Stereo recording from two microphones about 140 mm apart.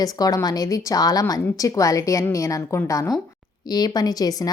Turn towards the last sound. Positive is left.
turn(degrees=25)  # may be behind; listen again after turning